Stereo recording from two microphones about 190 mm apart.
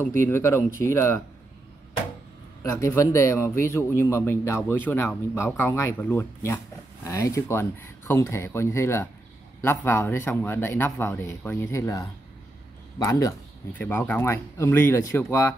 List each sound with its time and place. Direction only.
0.0 s speech: 15° left (ahead or behind)
2.7 s speech: 15° left (ahead or behind)